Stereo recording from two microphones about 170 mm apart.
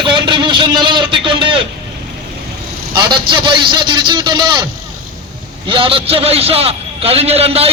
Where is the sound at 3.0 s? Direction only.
25° right (ahead or behind).